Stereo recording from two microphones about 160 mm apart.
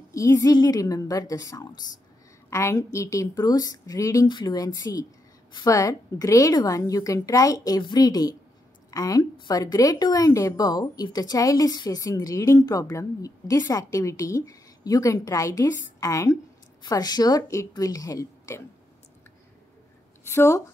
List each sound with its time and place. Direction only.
0.1 s a woman's voice: 20° left (ahead or behind)
20.2 s speech: 20° left (ahead or behind)